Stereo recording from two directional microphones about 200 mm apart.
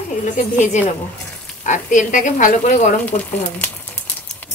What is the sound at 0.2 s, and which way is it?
A woman's voice, 35° left (ahead or behind).